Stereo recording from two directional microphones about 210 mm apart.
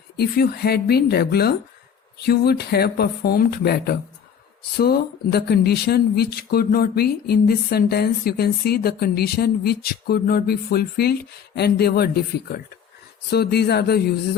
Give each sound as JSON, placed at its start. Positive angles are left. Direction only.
{"t": 0.2, "sound": "speech", "side_deg": 50}